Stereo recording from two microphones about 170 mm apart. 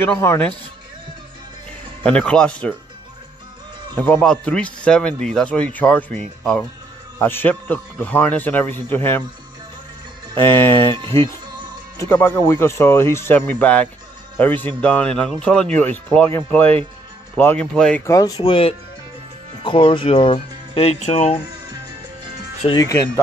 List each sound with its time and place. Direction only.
0.0 s speech: 15° left (ahead or behind)
2.0 s speech: 5° left (ahead or behind)
4.0 s speech: 10° left (ahead or behind)
10.4 s speech: 15° left (ahead or behind)
12.0 s speech: 15° left (ahead or behind)
18.0 s speech: 20° left (ahead or behind); by 21.4 s 40° left (ahead or behind)
22.7 s speech: 20° left (ahead or behind)